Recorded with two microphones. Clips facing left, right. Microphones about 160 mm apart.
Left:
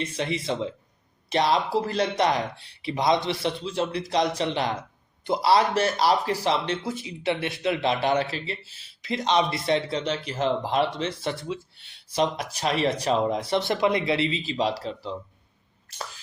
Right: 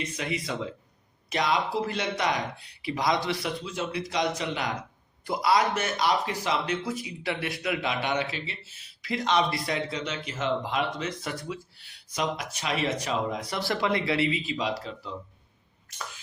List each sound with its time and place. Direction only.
0.0 s a man's voice: 30° left (ahead or behind)